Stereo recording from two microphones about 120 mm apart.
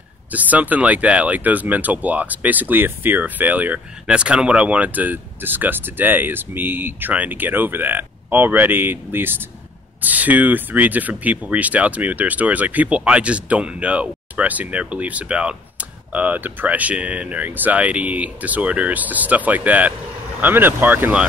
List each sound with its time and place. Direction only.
0.3 s speech: 15° right (ahead or behind)